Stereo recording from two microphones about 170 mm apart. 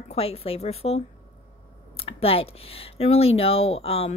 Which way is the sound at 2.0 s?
35° left (ahead or behind).